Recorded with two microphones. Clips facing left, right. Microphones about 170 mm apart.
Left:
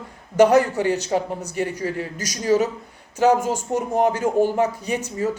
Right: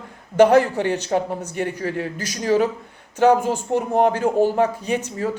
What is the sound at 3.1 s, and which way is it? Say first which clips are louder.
Speech: right 2 dB; 10° left (ahead or behind).